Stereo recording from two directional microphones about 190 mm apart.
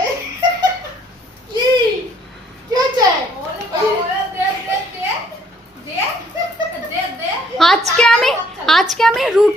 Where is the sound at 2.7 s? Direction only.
20° right (ahead or behind).